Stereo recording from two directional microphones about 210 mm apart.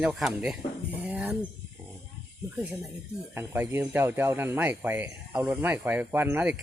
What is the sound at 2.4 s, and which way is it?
Speech, 10° right (ahead or behind).